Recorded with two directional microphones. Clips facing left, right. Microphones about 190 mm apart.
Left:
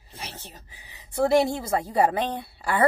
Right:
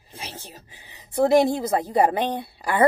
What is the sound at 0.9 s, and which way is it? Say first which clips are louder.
A woman's voice: right 3 dB; 20° right (ahead or behind).